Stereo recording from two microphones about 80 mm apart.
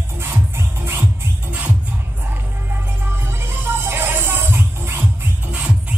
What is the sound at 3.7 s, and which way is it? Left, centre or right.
Music, right.